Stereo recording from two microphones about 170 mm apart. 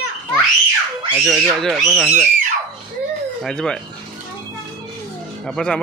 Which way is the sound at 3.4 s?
5° left (ahead or behind).